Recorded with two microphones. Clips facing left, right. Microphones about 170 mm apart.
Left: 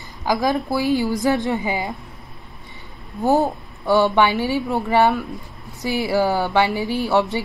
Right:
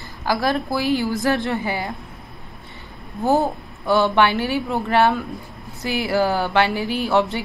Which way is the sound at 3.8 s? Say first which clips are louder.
Left 1 dB; 15° left (ahead or behind).